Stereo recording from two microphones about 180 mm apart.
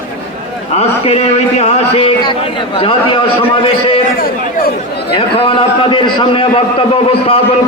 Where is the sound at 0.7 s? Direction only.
35° left (ahead or behind).